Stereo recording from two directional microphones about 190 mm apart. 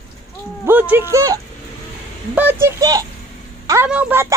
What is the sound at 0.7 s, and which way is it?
A woman's voice, 10° right (ahead or behind).